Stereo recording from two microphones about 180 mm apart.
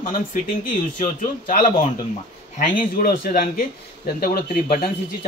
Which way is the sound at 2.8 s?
50° left (ahead or behind).